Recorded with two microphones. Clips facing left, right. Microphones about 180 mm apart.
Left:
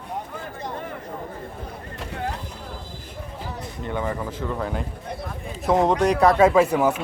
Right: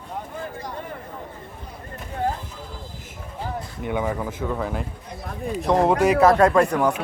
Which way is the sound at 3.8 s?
10° right (ahead or behind).